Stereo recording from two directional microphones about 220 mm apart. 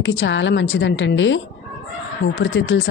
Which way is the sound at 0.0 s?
60° left (ahead or behind).